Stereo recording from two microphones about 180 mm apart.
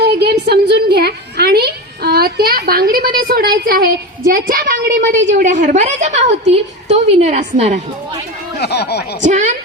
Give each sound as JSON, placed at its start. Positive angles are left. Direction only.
{"t": 0.0, "sound": "a sound", "side_deg": -65}
{"t": 3.2, "sound": "a woman's voice", "side_deg": -55}
{"t": 8.6, "sound": "speech", "side_deg": 65}
{"t": 9.2, "sound": "speech", "side_deg": -40}